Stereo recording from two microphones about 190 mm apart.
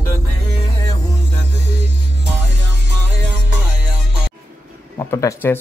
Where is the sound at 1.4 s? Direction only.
65° right (ahead or behind).